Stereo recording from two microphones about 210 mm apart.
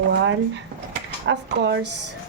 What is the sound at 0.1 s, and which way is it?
Drawer open or close, 60° right (ahead or behind).